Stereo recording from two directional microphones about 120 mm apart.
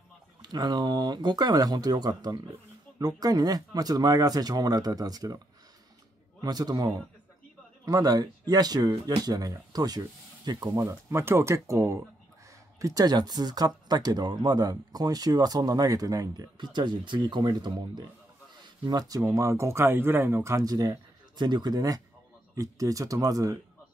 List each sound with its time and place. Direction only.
0.4 s speech: 35° right (ahead or behind)
6.4 s speech: 35° right (ahead or behind)